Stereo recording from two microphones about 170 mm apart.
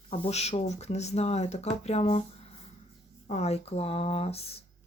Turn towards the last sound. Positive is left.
turn(degrees=35)  # may be behind; listen again after turning